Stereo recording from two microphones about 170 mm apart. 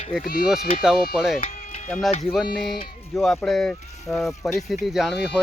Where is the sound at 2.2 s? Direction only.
Centre (ahead or behind).